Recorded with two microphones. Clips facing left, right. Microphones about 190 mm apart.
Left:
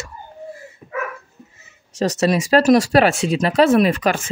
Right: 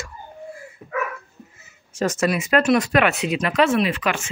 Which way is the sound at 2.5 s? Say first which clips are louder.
Left 5 dB; 35° left (ahead or behind).